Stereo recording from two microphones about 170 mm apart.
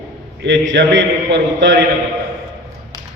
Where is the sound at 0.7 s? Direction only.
90° right.